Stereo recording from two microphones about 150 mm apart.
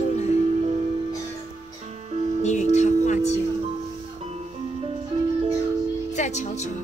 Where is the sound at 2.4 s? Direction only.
50° left (ahead or behind).